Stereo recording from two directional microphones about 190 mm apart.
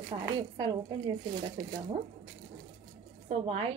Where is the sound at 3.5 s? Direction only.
30° right (ahead or behind).